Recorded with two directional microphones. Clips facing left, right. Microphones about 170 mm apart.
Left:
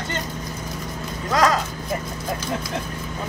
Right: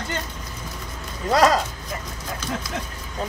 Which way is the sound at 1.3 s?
25° right (ahead or behind).